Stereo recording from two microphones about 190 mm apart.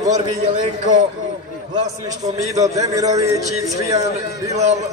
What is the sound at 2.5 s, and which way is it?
Speech, 15° right (ahead or behind).